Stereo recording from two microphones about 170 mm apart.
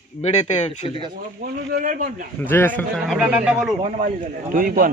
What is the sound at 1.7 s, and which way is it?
Speech, 50° right (ahead or behind).